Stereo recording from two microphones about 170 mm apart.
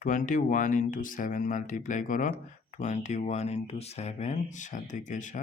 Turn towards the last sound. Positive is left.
turn(degrees=45)  # may be behind; listen again after turning